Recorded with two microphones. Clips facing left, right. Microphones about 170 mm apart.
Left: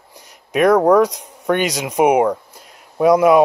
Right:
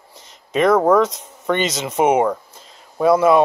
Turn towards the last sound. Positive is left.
turn(degrees=15)  # may be behind; listen again after turning